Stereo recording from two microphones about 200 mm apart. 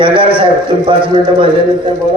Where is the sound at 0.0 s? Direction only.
25° right (ahead or behind).